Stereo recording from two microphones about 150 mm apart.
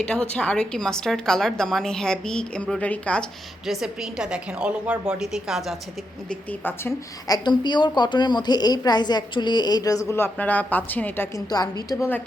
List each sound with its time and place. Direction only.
0.0 s a woman's voice: 5° left (ahead or behind)
3.7 s a woman's voice: 5° right (ahead or behind)
6.5 s speech: 15° left (ahead or behind)
7.3 s a woman's voice: 25° left (ahead or behind)
11.5 s a woman's voice: 25° left (ahead or behind)